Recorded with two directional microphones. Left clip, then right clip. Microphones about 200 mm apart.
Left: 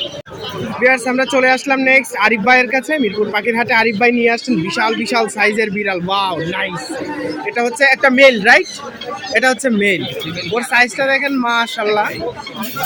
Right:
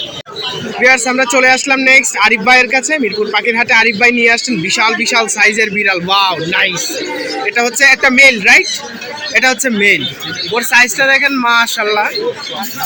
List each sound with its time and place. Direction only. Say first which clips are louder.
0.8 s speech: right 4 dB; 5° left (ahead or behind)